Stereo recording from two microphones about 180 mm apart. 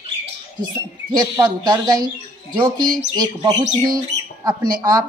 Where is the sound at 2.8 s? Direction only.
50° right (ahead or behind).